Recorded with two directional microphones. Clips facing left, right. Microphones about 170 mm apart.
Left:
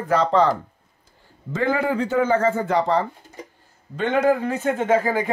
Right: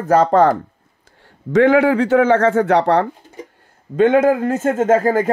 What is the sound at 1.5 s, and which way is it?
A man's voice, 80° right.